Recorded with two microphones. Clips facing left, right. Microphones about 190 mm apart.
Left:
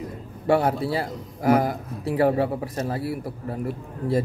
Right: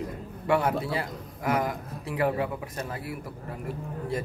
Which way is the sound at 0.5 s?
35° left (ahead or behind).